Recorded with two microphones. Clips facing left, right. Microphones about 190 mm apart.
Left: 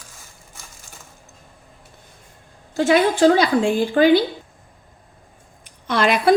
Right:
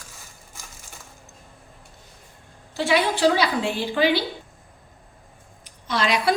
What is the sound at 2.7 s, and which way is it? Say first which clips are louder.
A woman's voice: left 6 dB; 45° left (ahead or behind).